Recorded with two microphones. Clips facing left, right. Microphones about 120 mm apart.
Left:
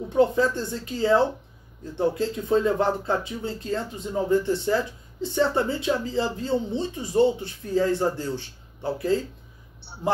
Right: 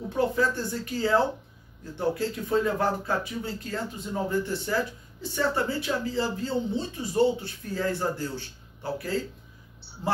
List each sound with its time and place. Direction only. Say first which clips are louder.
0.4 s speech: left 3 dB; 20° left (ahead or behind)